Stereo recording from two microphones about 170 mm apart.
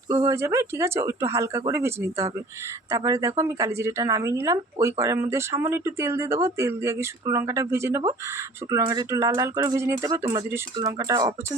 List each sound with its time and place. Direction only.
0.1 s a woman's voice: 20° right (ahead or behind)